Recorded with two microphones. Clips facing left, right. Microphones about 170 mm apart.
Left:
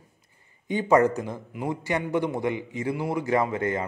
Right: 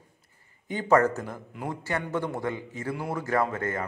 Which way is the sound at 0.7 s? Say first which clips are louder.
Left 2 dB; 15° left (ahead or behind).